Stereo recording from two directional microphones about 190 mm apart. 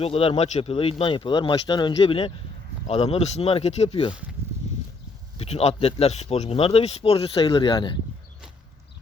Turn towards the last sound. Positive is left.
turn(degrees=25)  # may be behind; listen again after turning